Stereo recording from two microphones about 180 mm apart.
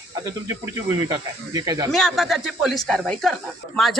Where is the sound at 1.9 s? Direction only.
Centre (ahead or behind).